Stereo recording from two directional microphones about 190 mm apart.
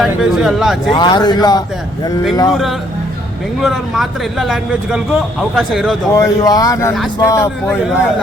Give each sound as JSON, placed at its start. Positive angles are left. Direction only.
{"t": 0.0, "sound": "a man's voice", "side_deg": 0}
{"t": 0.9, "sound": "a man's voice", "side_deg": 25}
{"t": 2.5, "sound": "a man's voice", "side_deg": 0}
{"t": 6.1, "sound": "speech", "side_deg": 15}